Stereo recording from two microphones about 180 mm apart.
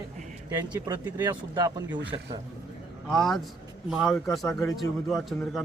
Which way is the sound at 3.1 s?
Centre (ahead or behind).